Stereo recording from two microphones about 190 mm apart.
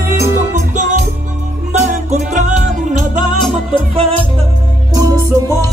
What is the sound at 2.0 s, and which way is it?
Music, 40° right (ahead or behind).